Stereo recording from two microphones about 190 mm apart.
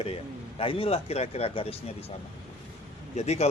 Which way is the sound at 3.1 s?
35° left (ahead or behind).